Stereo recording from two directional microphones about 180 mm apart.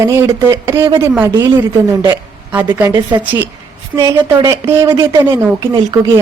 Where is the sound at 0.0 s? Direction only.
15° right (ahead or behind).